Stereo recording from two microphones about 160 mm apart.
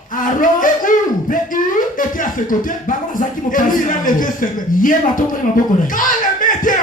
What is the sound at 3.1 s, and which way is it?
Speech, 55° left (ahead or behind).